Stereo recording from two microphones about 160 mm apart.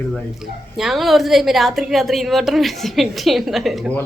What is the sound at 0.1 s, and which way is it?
A woman's voice, centre (ahead or behind).